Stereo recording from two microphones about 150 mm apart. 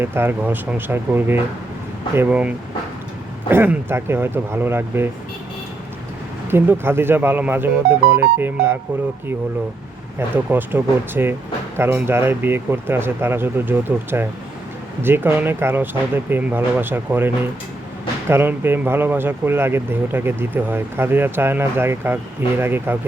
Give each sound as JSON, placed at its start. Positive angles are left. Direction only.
{"t": 0.0, "sound": "speech", "side_deg": -15}
{"t": 3.5, "sound": "speech", "side_deg": -15}
{"t": 6.5, "sound": "speech", "side_deg": -15}
{"t": 10.2, "sound": "speech", "side_deg": -15}